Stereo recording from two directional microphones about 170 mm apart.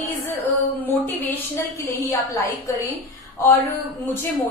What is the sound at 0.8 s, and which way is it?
A woman's voice, 10° left (ahead or behind).